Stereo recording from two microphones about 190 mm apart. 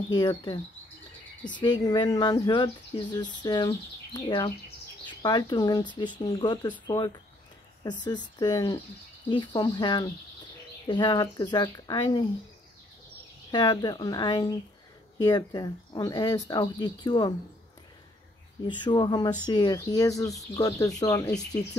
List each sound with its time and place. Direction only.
0.1 s speech: 20° left (ahead or behind)
8.0 s speech: 20° left (ahead or behind)
13.5 s speech: 25° left (ahead or behind)
18.7 s speech: 25° left (ahead or behind)